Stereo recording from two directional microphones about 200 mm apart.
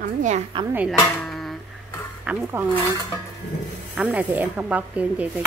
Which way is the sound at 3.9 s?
10° right (ahead or behind).